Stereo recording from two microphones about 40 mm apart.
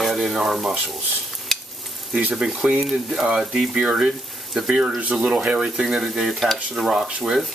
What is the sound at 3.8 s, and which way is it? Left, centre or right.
Speech, centre.